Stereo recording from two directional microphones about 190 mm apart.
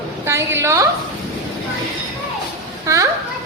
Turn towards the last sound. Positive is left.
turn(degrees=-15)  # may be behind; listen again after turning